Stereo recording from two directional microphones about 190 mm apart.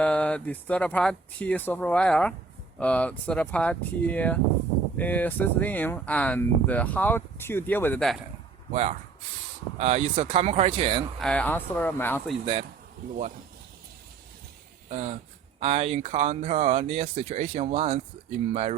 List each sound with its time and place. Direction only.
0.0 s speech: 5° left (ahead or behind)
8.7 s speech: 35° right (ahead or behind)
11.2 s speech: 5° left (ahead or behind)
14.8 s speech: 40° right (ahead or behind)